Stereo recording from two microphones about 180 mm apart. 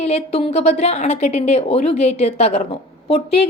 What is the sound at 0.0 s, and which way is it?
A woman's voice, 35° left (ahead or behind).